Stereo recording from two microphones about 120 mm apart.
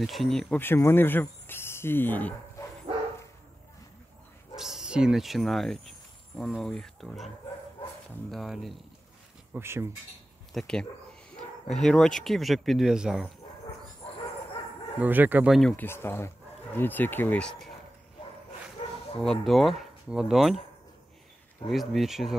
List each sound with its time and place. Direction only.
0.0 s speech: centre (ahead or behind)
0.6 s speech: 20° left (ahead or behind)
4.6 s speech: 5° right (ahead or behind)
8.3 s speech: centre (ahead or behind)
9.5 s speech: 20° right (ahead or behind)
10.5 s bow-wow: 5° left (ahead or behind)
11.8 s speech: 5° left (ahead or behind)
15.0 s speech: 15° right (ahead or behind)
15.7 s speech: 20° left (ahead or behind)
18.8 s bow-wow: 55° left (ahead or behind)
19.2 s speech: centre (ahead or behind)
21.6 s speech: centre (ahead or behind)